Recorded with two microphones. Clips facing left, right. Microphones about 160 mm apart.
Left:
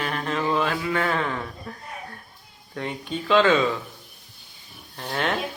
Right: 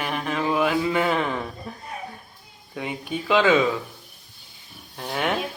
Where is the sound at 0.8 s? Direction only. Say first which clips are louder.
Right 2 dB; 15° right (ahead or behind).